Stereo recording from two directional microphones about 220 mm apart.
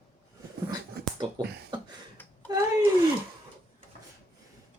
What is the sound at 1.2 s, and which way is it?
Beatboxing, 20° right (ahead or behind).